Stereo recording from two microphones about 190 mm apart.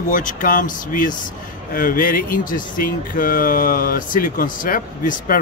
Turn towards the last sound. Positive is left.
turn(degrees=45)  # may be behind; listen again after turning